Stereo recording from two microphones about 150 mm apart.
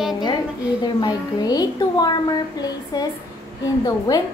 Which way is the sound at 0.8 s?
25° left (ahead or behind).